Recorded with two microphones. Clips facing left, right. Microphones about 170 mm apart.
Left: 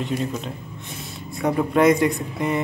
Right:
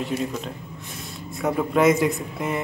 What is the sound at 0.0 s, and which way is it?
Speech, centre (ahead or behind).